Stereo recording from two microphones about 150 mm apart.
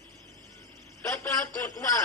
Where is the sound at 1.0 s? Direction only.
20° left (ahead or behind).